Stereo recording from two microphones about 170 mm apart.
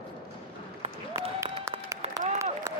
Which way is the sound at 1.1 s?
15° right (ahead or behind).